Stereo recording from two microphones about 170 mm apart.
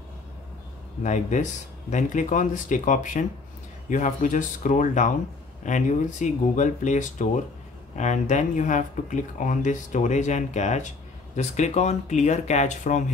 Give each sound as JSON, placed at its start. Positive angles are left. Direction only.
{"t": 1.0, "sound": "speech", "side_deg": 45}